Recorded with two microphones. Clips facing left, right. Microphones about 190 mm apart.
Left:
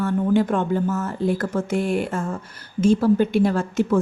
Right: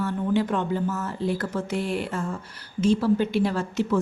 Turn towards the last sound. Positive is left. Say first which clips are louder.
# left 4 dB
turn(degrees=50)  # may be behind; listen again after turning